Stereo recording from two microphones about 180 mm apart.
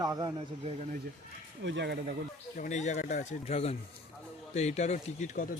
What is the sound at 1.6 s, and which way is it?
Speech, 75° right (ahead or behind).